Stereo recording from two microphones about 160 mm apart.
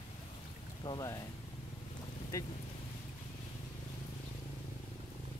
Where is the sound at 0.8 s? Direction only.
25° left (ahead or behind).